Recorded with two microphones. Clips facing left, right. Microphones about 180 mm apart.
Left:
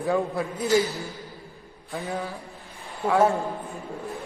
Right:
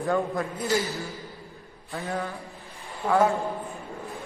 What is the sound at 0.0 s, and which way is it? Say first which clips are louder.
Speech: left 1 dB; centre (ahead or behind).